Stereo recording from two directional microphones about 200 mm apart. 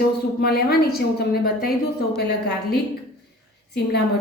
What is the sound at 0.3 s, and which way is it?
A woman's voice, 50° left (ahead or behind).